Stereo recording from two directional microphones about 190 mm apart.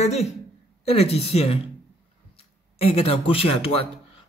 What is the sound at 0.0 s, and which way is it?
A man's voice, 35° left (ahead or behind).